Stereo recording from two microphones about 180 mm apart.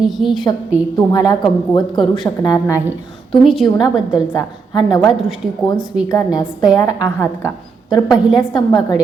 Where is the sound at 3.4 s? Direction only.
Centre (ahead or behind).